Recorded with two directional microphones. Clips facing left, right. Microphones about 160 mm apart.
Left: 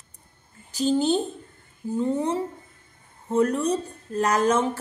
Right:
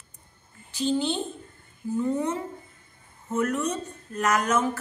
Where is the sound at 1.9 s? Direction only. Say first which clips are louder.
Left 2 dB; 30° left (ahead or behind).